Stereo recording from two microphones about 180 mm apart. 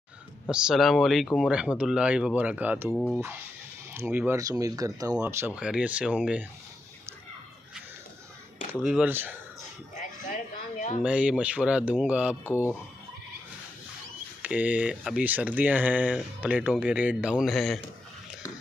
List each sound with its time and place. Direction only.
0.5 s speech: 5° right (ahead or behind)
2.9 s speech: centre (ahead or behind)
3.9 s speech: 10° right (ahead or behind)
8.7 s speech: 5° right (ahead or behind)
9.9 s a sound: 45° left (ahead or behind)
11.0 s speech: 5° right (ahead or behind)
14.4 s speech: 5° right (ahead or behind)